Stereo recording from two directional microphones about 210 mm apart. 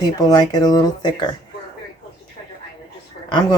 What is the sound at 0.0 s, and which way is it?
Speech, 20° left (ahead or behind).